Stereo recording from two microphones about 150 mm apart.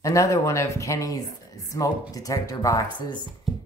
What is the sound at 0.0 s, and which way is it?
Speech, 20° left (ahead or behind).